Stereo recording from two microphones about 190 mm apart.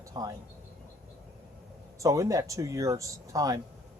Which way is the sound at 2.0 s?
15° right (ahead or behind).